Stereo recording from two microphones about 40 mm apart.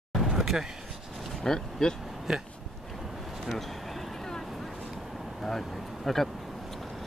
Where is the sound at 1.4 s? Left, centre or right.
Centre.